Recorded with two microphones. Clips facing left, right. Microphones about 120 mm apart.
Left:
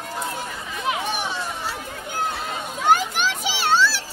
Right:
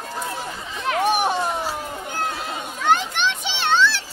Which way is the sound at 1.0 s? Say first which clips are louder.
Right 7 dB; 50° right (ahead or behind).